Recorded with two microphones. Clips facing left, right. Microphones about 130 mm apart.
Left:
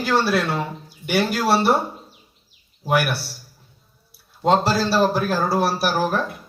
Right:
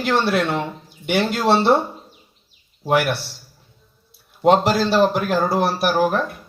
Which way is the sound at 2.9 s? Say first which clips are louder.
Right 2 dB; 20° right (ahead or behind).